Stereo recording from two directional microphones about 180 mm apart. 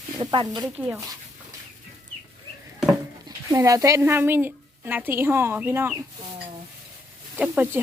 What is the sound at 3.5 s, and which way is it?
A woman's voice, 20° right (ahead or behind).